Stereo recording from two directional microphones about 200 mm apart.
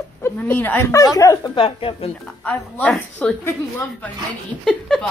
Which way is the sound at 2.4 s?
5° left (ahead or behind).